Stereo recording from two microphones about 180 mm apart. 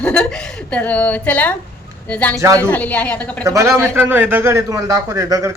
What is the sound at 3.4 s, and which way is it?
A man's voice, 15° right (ahead or behind).